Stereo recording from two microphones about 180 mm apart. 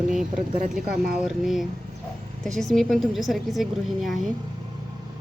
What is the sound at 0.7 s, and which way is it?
Speech, 5° right (ahead or behind).